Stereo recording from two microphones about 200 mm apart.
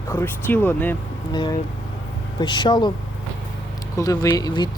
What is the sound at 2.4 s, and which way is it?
Speech, 20° left (ahead or behind).